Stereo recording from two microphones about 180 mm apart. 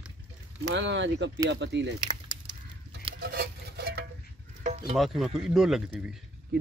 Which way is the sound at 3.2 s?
60° right (ahead or behind).